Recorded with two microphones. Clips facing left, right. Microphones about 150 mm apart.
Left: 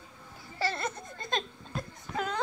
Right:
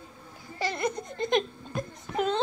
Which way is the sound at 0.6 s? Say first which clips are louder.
Right 3 dB; 15° right (ahead or behind).